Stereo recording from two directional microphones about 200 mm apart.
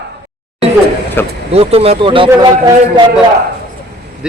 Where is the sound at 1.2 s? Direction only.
10° left (ahead or behind).